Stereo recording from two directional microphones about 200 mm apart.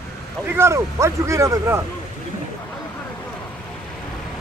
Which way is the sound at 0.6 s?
15° right (ahead or behind).